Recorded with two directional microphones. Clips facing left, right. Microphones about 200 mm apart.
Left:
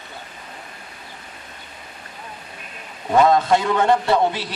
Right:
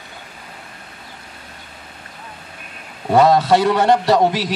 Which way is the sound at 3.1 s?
35° right (ahead or behind).